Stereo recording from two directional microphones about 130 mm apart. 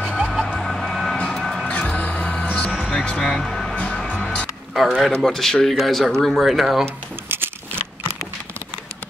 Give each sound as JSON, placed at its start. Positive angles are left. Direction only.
{"t": 0.2, "sound": "emergency vehicle", "side_deg": 0}
{"t": 0.5, "sound": "vehicle", "side_deg": 5}
{"t": 1.7, "sound": "music", "side_deg": 10}
{"t": 4.7, "sound": "speech", "side_deg": 0}
{"t": 7.2, "sound": "a sound", "side_deg": -15}